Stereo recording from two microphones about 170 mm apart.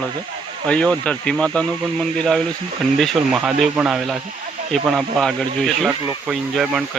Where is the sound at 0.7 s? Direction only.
5° left (ahead or behind).